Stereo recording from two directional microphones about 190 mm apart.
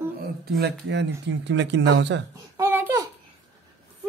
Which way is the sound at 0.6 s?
65° right (ahead or behind).